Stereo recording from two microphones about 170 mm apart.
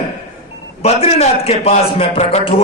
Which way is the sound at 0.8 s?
40° left (ahead or behind).